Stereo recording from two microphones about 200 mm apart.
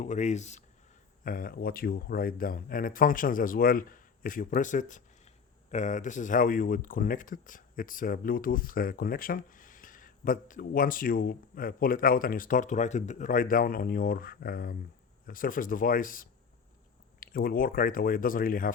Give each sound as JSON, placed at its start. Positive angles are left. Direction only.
{"t": 0.0, "sound": "speech", "side_deg": 35}